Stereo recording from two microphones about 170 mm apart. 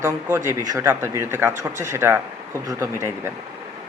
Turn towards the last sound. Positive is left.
turn(degrees=-15)  # may be behind; listen again after turning